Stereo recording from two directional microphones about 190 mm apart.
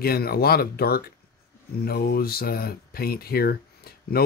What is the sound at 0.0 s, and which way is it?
Speech, 55° left (ahead or behind).